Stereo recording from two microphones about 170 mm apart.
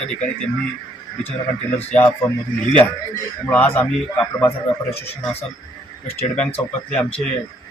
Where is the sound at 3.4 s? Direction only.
10° left (ahead or behind).